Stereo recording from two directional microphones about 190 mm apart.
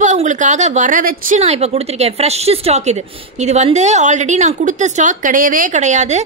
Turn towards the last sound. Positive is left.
turn(degrees=-40)  # may be behind; listen again after turning